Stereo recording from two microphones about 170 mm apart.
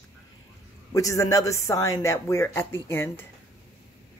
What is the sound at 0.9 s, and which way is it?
Speech, 20° left (ahead or behind).